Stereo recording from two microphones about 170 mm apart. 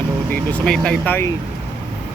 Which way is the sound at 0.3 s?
10° left (ahead or behind).